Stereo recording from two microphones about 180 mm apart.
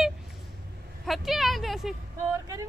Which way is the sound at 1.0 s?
Centre (ahead or behind).